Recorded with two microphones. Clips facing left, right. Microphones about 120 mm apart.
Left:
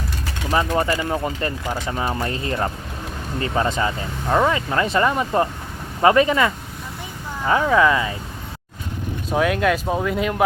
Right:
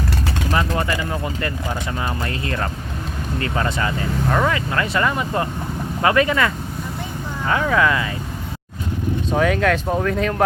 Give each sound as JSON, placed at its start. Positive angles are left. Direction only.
{"t": 0.5, "sound": "speech", "side_deg": 25}
{"t": 9.3, "sound": "speech", "side_deg": 5}